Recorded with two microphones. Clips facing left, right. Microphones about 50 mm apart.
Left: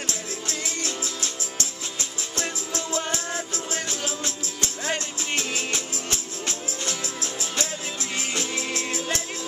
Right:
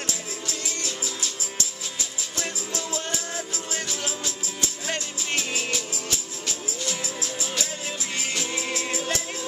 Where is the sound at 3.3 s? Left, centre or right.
Left.